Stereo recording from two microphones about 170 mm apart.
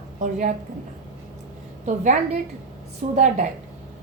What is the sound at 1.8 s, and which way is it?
A woman's voice, 45° right (ahead or behind).